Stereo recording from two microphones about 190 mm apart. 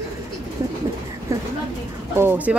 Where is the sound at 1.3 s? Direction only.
15° right (ahead or behind).